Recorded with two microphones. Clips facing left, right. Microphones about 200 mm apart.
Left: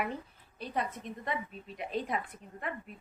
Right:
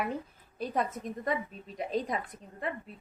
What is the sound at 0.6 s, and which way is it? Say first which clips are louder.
A woman's voice: right 4 dB; 45° right (ahead or behind).